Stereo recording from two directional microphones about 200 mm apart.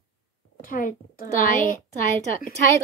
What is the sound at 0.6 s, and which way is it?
Speech, 45° left (ahead or behind).